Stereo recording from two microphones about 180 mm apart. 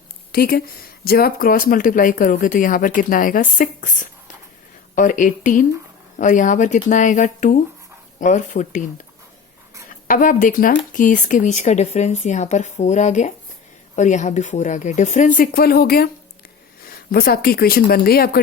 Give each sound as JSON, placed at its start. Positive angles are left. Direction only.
{"t": 0.3, "sound": "speech", "side_deg": 55}
{"t": 10.1, "sound": "speech", "side_deg": 45}